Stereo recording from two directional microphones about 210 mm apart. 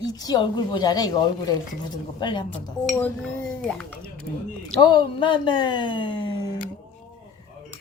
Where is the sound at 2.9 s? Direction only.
5° left (ahead or behind).